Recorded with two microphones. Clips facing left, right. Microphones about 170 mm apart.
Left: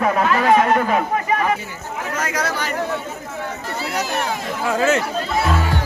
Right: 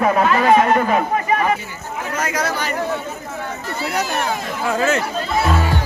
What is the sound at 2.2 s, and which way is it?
Chatter, 10° right (ahead or behind).